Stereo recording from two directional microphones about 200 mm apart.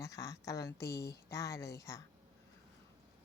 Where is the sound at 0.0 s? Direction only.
15° left (ahead or behind).